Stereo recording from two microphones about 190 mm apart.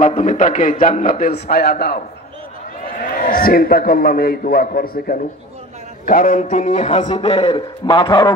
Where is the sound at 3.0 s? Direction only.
45° left (ahead or behind).